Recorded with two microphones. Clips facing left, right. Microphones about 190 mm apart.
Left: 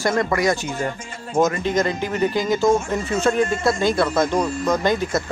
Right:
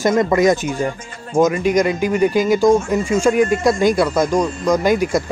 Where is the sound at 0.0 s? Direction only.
20° right (ahead or behind).